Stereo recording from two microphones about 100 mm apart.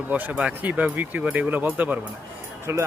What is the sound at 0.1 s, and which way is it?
Speech, 15° right (ahead or behind).